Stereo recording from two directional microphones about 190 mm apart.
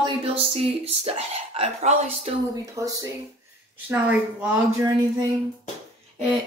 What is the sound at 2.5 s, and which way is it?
A woman's voice, 15° right (ahead or behind).